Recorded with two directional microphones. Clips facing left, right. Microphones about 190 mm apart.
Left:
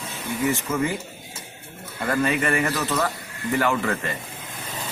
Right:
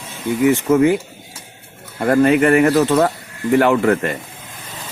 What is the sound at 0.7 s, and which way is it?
Speech, 65° right (ahead or behind).